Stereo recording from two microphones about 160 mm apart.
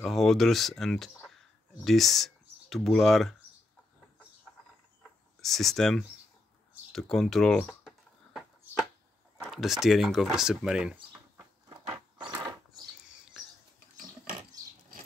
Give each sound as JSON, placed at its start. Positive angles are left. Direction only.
{"t": 0.0, "sound": "speech", "side_deg": 0}
{"t": 5.4, "sound": "speech", "side_deg": 0}
{"t": 9.5, "sound": "speech", "side_deg": 0}
{"t": 11.7, "sound": "a sound", "side_deg": -30}